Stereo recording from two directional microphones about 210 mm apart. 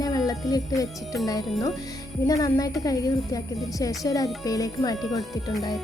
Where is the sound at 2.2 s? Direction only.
15° left (ahead or behind).